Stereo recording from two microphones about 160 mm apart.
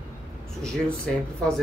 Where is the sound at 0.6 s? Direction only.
5° left (ahead or behind).